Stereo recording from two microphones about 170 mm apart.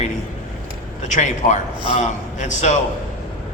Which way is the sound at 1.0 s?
45° left (ahead or behind).